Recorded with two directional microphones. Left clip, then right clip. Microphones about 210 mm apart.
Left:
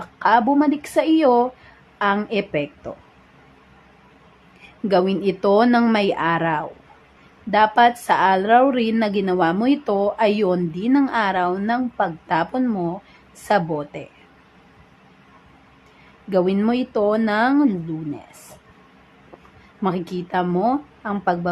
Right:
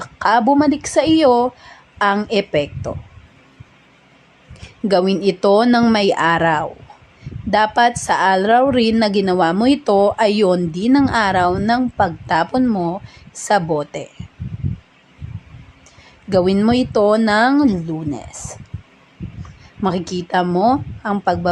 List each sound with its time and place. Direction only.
0.0 s a woman's voice: 20° right (ahead or behind)
4.9 s a woman's voice: 20° right (ahead or behind)
7.8 s a woman's voice: 20° right (ahead or behind)
16.3 s a woman's voice: 20° right (ahead or behind)
19.8 s a woman's voice: 20° right (ahead or behind)